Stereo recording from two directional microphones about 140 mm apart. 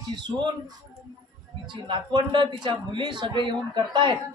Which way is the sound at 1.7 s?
35° right (ahead or behind).